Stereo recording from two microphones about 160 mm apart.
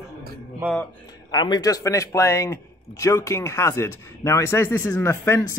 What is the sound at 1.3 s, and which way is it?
A man's voice, 25° left (ahead or behind).